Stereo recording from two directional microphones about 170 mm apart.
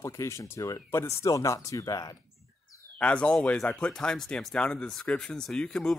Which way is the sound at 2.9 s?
5° left (ahead or behind).